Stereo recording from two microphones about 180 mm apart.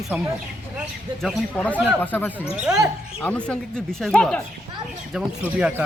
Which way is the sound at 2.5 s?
5° right (ahead or behind).